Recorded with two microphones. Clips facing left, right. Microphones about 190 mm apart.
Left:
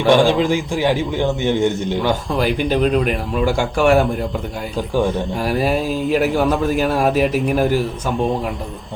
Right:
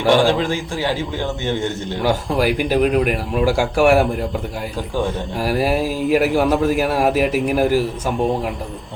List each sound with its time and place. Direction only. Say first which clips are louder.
0.1 s a man's voice: left 2 dB; 15° left (ahead or behind)
2.0 s a man's voice: right 3 dB; 5° right (ahead or behind)
5.4 s a man's voice: right 2 dB; 5° right (ahead or behind)